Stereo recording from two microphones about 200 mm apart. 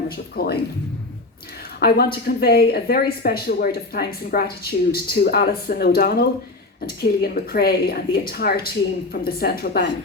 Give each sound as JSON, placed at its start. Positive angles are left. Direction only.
{"t": 0.4, "sound": "speech", "side_deg": 50}
{"t": 1.8, "sound": "speech", "side_deg": 50}